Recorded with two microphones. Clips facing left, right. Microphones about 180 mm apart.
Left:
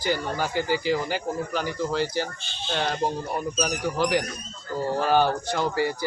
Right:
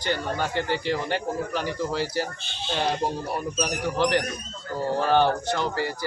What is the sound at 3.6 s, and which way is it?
A man's voice, centre (ahead or behind).